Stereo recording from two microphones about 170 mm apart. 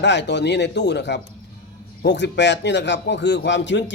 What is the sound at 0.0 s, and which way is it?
Speech, 90° left.